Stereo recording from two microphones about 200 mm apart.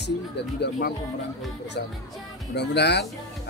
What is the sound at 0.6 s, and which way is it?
Speech, 55° left (ahead or behind).